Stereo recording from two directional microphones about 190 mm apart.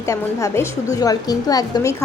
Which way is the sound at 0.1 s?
15° left (ahead or behind).